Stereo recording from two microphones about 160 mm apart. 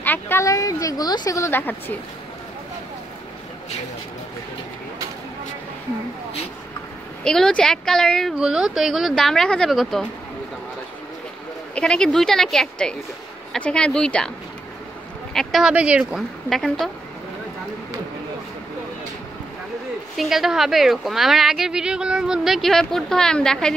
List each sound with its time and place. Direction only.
0.0 s a woman's voice: 15° left (ahead or behind)
7.2 s speech: 5° left (ahead or behind)
11.7 s speech: 5° left (ahead or behind)
15.3 s speech: centre (ahead or behind)
20.2 s speech: centre (ahead or behind)